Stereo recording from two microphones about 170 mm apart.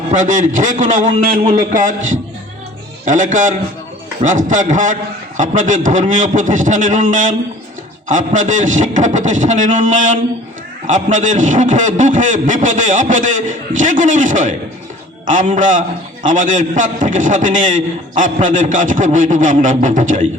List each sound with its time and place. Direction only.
0.1 s a man's voice: 50° right (ahead or behind)